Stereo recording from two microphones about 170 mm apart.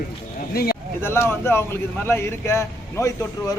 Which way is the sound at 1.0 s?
15° left (ahead or behind).